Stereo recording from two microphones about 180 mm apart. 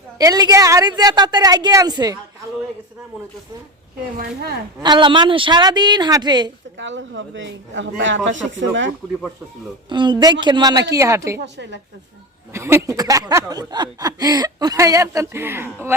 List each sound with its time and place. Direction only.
0.2 s speech: 20° right (ahead or behind)
4.8 s speech: 25° right (ahead or behind)
6.7 s speech: 90° right
9.9 s speech: 25° right (ahead or behind)
11.3 s a woman's voice: 80° right
12.5 s speech: 15° right (ahead or behind)